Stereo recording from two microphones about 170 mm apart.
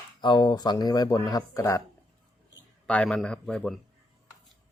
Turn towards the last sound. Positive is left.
turn(degrees=0)  # may be behind; listen again after turning